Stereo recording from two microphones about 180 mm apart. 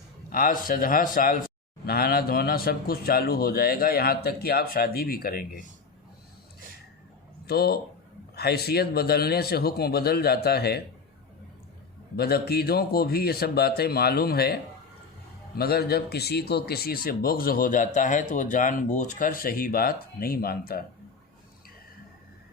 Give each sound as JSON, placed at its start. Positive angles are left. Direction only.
{"t": 0.3, "sound": "a man's voice", "side_deg": 50}
{"t": 7.4, "sound": "a man's voice", "side_deg": 60}
{"t": 12.1, "sound": "a man's voice", "side_deg": 60}